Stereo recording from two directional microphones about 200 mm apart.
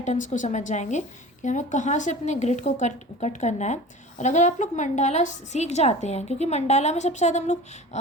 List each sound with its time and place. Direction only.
0.0 s a woman's voice: 35° left (ahead or behind)